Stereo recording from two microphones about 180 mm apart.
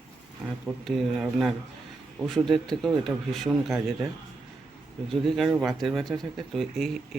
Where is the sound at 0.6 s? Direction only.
Centre (ahead or behind).